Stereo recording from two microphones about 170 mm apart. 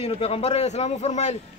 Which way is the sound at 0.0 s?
35° left (ahead or behind).